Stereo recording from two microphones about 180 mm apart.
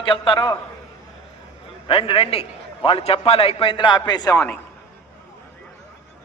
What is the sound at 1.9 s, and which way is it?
A man's voice, 30° left (ahead or behind).